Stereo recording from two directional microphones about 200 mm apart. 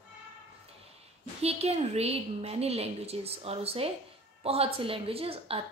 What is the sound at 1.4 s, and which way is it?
A woman's voice, 30° right (ahead or behind).